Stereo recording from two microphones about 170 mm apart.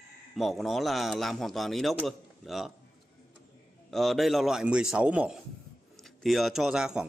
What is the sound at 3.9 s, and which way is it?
A man's voice, centre (ahead or behind).